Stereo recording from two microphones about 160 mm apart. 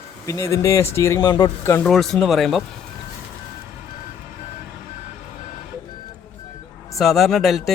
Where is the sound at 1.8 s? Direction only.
Centre (ahead or behind).